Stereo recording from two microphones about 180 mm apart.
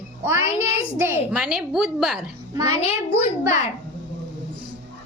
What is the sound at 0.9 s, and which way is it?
A child's voice, 10° right (ahead or behind).